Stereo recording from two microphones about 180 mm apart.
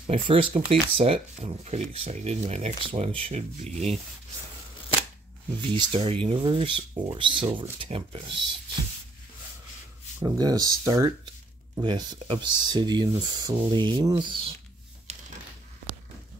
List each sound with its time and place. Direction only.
0.0 s speech: 30° right (ahead or behind)
5.6 s speech: 30° right (ahead or behind)
10.2 s speech: 20° right (ahead or behind)
15.1 s typewriter: 35° right (ahead or behind)